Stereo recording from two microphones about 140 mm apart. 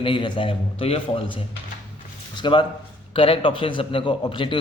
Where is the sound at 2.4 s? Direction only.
35° left (ahead or behind).